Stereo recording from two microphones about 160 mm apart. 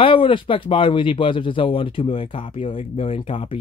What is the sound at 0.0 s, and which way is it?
Speech, 35° left (ahead or behind).